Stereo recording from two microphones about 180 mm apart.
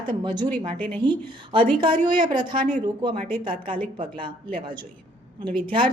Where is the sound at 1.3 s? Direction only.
25° right (ahead or behind).